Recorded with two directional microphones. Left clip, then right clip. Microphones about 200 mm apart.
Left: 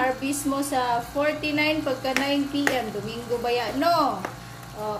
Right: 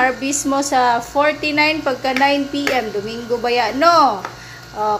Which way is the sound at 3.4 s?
25° right (ahead or behind).